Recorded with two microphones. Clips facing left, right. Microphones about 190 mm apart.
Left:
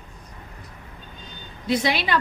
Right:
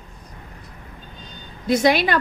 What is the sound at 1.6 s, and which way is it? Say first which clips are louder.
Speech: right 6 dB; 45° right (ahead or behind).